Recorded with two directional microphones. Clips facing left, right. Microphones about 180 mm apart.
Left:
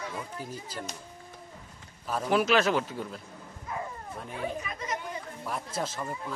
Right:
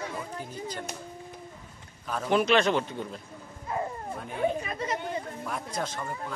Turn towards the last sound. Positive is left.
turn(degrees=5)  # may be behind; listen again after turning